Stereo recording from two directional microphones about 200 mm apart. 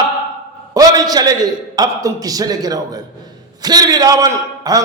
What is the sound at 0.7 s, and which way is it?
A man's voice, 20° right (ahead or behind).